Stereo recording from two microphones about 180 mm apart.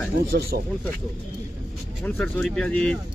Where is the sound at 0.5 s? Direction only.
55° right (ahead or behind).